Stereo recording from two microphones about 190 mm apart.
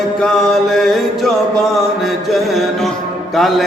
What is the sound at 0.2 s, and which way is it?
Mantra, centre (ahead or behind).